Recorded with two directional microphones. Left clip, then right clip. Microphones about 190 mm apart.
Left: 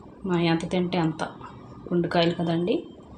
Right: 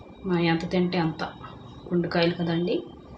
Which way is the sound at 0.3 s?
30° left (ahead or behind).